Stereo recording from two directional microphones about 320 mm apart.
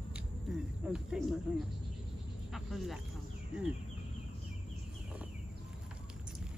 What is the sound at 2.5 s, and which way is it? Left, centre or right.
Snake, centre.